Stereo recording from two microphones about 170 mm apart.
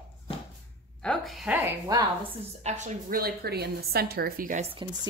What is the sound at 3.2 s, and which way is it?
A woman's voice, 70° right (ahead or behind).